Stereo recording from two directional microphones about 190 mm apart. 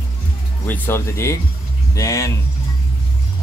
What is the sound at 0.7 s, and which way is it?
Speech, 10° left (ahead or behind).